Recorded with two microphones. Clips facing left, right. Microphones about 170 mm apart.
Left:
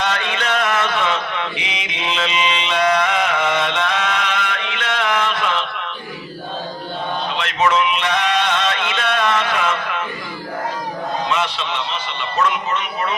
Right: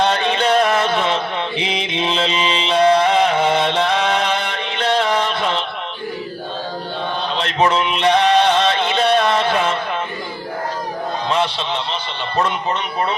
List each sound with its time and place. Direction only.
0.0 s chant: 35° right (ahead or behind)
7.3 s music: 35° right (ahead or behind)
11.3 s a sound: 30° right (ahead or behind)
12.4 s speech: 35° right (ahead or behind)